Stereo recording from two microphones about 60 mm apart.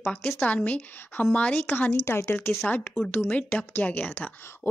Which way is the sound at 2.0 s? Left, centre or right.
Left.